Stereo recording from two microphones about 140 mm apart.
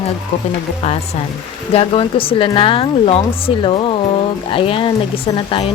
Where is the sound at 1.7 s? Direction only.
40° left (ahead or behind).